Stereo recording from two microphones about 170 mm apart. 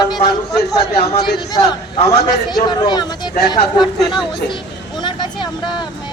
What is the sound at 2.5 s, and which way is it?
Speech, 25° left (ahead or behind).